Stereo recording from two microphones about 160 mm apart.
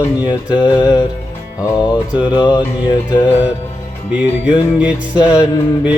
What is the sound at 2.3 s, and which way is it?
Mantra, 30° left (ahead or behind).